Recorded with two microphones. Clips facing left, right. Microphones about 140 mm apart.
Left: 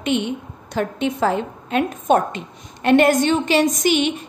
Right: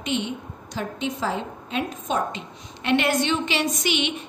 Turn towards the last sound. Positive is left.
turn(degrees=45)  # may be behind; listen again after turning